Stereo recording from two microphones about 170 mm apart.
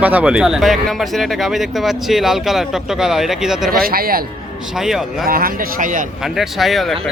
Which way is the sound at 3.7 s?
60° right (ahead or behind).